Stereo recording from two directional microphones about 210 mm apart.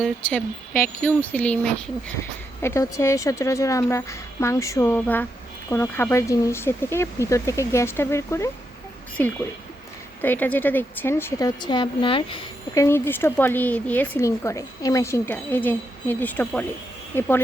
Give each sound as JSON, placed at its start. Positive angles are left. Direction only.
{"t": 0.0, "sound": "speech", "side_deg": 5}
{"t": 0.7, "sound": "speech", "side_deg": 40}
{"t": 1.0, "sound": "speech", "side_deg": 5}
{"t": 12.8, "sound": "speech", "side_deg": 10}